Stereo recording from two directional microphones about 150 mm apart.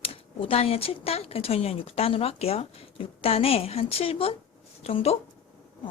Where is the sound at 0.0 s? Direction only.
40° left (ahead or behind).